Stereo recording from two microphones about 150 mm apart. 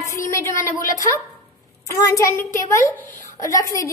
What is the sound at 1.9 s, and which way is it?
A child's voice, 20° left (ahead or behind).